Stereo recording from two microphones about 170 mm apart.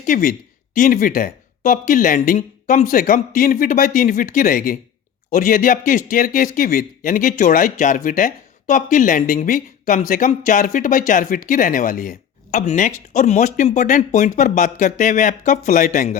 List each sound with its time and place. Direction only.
0.0 s speech: 55° left (ahead or behind)